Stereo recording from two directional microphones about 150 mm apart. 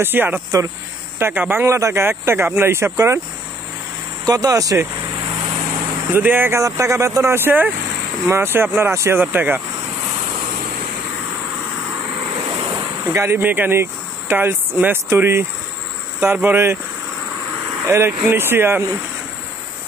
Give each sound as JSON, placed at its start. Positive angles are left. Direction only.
{"t": 0.0, "sound": "speech", "side_deg": -15}
{"t": 4.3, "sound": "speech", "side_deg": -25}
{"t": 6.1, "sound": "speech", "side_deg": -15}
{"t": 13.0, "sound": "speech", "side_deg": -20}
{"t": 17.8, "sound": "speech", "side_deg": -15}